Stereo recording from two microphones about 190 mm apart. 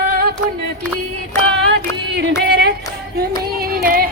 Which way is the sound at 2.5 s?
55° right (ahead or behind).